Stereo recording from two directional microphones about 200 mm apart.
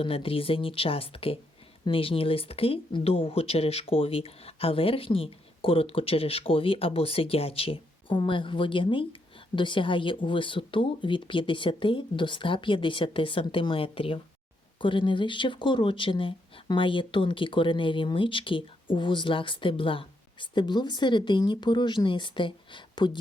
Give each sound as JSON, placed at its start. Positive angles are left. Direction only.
{"t": 0.0, "sound": "speech", "side_deg": 25}